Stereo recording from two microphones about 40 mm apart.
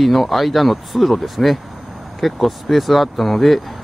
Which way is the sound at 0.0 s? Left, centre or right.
Centre.